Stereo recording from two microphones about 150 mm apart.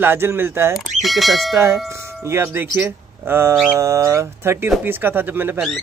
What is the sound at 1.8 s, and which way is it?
Speech, 20° right (ahead or behind).